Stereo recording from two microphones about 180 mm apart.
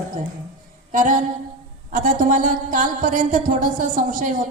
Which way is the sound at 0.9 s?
45° right (ahead or behind).